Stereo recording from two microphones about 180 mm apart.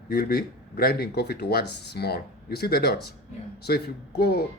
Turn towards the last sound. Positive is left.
turn(degrees=60)  # may be behind; listen again after turning